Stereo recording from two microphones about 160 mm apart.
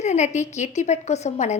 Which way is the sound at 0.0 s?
45° left (ahead or behind).